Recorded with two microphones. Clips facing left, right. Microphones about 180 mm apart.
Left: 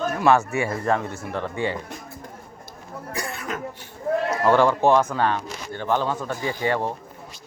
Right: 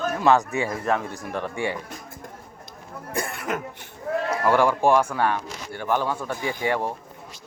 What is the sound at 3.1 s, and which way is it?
Cough, 55° right (ahead or behind).